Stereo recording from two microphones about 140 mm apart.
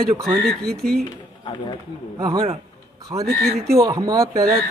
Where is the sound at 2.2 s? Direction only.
30° right (ahead or behind).